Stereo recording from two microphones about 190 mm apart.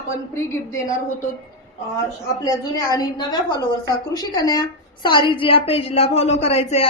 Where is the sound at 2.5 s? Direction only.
20° left (ahead or behind).